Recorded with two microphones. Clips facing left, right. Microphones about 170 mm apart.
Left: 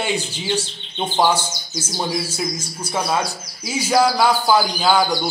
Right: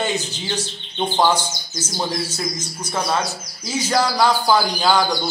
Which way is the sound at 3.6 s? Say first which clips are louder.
Left 3 dB; 10° left (ahead or behind).